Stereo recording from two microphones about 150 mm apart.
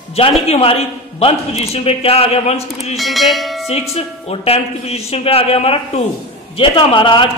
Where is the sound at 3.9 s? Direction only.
40° left (ahead or behind).